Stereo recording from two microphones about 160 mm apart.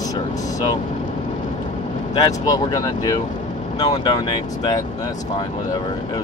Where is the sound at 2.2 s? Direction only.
25° left (ahead or behind).